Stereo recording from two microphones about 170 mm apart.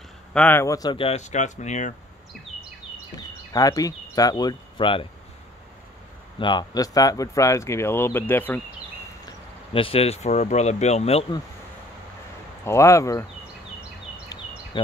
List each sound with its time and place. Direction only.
0.3 s speech: 10° left (ahead or behind); by 2.0 s 45° left (ahead or behind)
3.2 s speech: 20° left (ahead or behind)
6.4 s speech: 25° left (ahead or behind)
9.7 s speech: 30° left (ahead or behind)
12.6 s speech: 15° left (ahead or behind)